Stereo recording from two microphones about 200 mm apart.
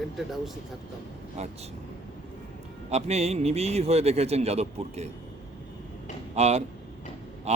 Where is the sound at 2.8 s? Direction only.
30° right (ahead or behind).